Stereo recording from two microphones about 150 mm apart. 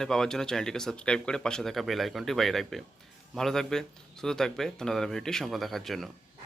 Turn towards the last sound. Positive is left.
turn(degrees=0)  # may be behind; listen again after turning